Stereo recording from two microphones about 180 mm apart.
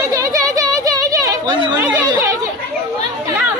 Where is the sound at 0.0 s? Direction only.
20° right (ahead or behind).